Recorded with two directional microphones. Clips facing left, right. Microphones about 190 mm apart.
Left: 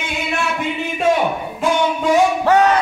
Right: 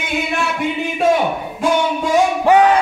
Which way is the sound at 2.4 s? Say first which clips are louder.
Right 2 dB; 15° right (ahead or behind).